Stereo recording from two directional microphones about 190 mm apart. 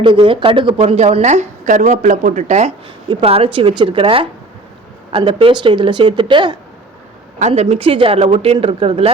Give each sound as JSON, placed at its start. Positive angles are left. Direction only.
{"t": 0.0, "sound": "a woman's voice", "side_deg": -25}
{"t": 7.3, "sound": "a woman's voice", "side_deg": -35}